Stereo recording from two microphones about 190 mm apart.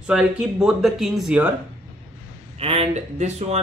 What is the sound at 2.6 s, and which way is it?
Speech, 30° right (ahead or behind).